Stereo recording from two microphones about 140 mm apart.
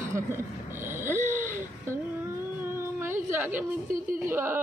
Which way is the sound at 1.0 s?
15° right (ahead or behind).